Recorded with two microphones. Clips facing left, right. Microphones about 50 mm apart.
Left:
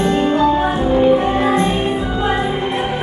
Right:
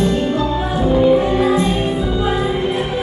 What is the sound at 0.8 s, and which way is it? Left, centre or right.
Music, centre.